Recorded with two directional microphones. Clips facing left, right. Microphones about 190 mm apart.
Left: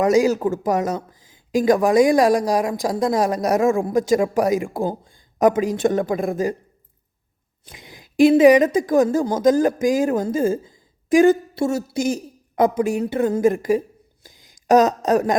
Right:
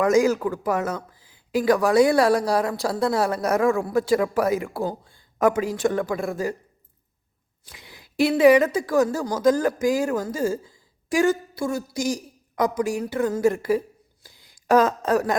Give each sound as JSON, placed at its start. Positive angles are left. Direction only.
{"t": 0.3, "sound": "a woman's voice", "side_deg": 25}
{"t": 3.7, "sound": "a woman's voice", "side_deg": 25}
{"t": 3.9, "sound": "speech", "side_deg": 15}
{"t": 7.6, "sound": "a woman's voice", "side_deg": 20}
{"t": 14.3, "sound": "a sound", "side_deg": 20}